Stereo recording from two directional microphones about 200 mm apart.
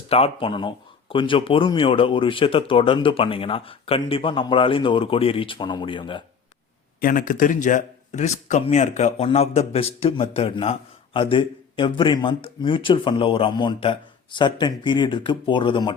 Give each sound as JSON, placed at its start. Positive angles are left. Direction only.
{"t": 0.1, "sound": "a man's voice", "side_deg": 30}
{"t": 7.0, "sound": "a man's voice", "side_deg": 45}